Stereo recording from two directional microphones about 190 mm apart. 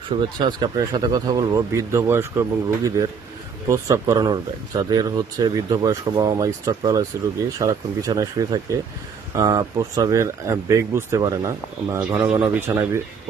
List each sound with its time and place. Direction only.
0.3 s speech: 25° right (ahead or behind)